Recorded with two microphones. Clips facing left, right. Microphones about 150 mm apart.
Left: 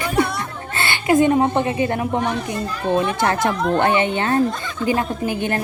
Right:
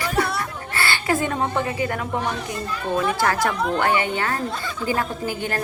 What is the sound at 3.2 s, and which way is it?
A woman's voice, 25° left (ahead or behind).